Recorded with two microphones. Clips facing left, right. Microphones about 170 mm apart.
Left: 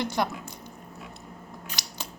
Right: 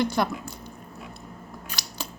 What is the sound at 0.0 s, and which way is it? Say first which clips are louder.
Speech: right 3 dB; 20° left (ahead or behind).